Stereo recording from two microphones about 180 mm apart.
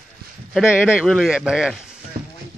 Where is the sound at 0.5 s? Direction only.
Centre (ahead or behind).